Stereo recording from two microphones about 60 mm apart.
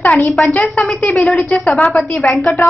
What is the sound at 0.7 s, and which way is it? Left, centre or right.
Speech, centre.